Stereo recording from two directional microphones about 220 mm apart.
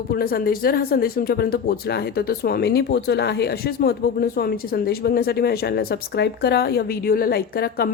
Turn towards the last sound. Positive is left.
turn(degrees=45)  # may be behind; listen again after turning